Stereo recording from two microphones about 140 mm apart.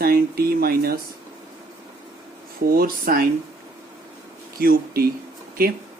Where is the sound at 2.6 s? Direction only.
90° right.